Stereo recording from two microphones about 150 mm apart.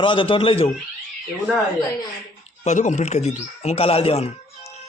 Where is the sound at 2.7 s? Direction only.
55° left (ahead or behind).